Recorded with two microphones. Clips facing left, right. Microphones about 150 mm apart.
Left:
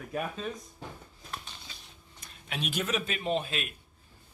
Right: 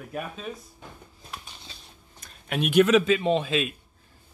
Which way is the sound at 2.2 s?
55° right (ahead or behind).